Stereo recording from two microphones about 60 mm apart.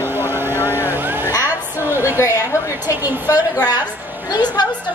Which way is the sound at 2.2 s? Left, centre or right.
Left.